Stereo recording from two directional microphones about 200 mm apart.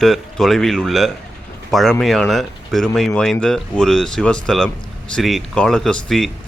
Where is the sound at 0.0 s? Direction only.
Centre (ahead or behind).